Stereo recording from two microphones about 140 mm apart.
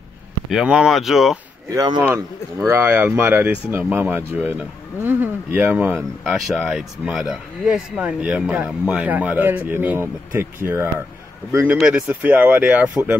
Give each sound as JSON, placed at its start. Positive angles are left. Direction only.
{"t": 0.5, "sound": "speech", "side_deg": -5}
{"t": 1.7, "sound": "speech", "side_deg": -25}
{"t": 5.9, "sound": "speech", "side_deg": 0}